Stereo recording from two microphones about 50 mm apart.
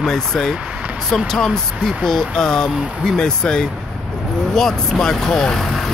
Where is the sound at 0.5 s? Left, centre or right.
Right.